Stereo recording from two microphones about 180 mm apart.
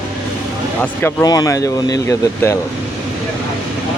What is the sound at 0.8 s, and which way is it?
Speech, 10° left (ahead or behind).